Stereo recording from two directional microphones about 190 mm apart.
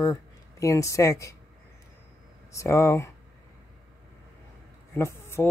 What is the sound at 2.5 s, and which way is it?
Speech, 15° left (ahead or behind).